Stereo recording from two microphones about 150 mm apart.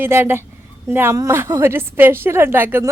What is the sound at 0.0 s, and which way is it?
A woman's voice, 15° right (ahead or behind).